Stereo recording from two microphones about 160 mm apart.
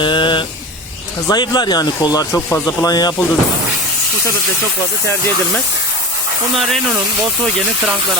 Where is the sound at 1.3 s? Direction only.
25° left (ahead or behind).